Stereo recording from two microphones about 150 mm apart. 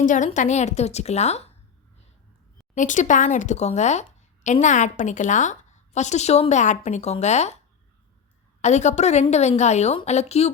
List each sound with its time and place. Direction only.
0.0 s a woman's voice: 60° left (ahead or behind)
2.7 s a woman's voice: 55° left (ahead or behind)
8.6 s a woman's voice: 50° left (ahead or behind)